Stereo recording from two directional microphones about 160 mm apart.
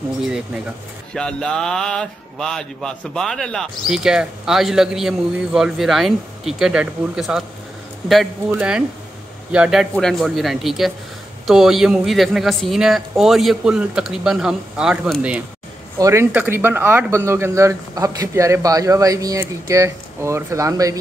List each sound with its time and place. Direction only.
1.1 s speech: 5° left (ahead or behind)
16.0 s speech: 20° right (ahead or behind)